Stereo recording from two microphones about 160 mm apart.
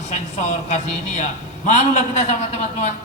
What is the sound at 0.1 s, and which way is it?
A man's voice, 45° left (ahead or behind).